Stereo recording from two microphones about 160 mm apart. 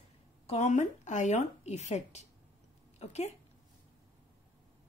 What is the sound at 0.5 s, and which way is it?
Speech, 45° left (ahead or behind).